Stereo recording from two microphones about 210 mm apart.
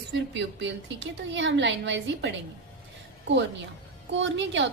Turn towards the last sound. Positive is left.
turn(degrees=-60)  # may be behind; listen again after turning